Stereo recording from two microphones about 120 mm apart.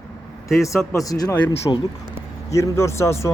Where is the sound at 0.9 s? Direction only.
30° left (ahead or behind).